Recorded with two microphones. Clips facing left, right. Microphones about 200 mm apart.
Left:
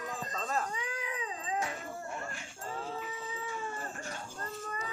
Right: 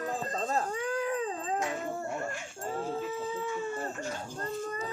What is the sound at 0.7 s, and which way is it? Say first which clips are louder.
Dog: right 8 dB; 50° right (ahead or behind).